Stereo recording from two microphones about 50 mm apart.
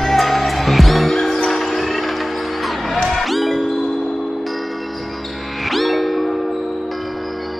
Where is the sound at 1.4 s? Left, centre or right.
Centre.